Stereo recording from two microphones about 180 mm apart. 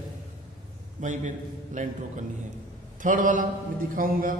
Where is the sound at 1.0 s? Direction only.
45° right (ahead or behind).